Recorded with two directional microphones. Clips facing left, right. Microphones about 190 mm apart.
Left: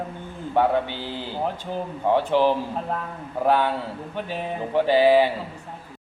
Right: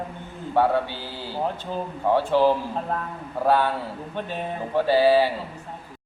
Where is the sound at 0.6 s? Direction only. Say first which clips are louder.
Even; 20° left (ahead or behind).